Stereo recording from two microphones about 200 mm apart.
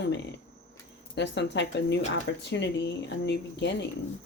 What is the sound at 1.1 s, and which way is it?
Speech, 60° left (ahead or behind).